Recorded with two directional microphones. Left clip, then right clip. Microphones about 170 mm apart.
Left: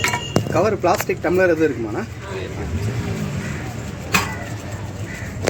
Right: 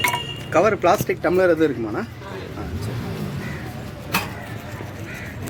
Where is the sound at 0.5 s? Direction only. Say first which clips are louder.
Right 2 dB; 15° right (ahead or behind).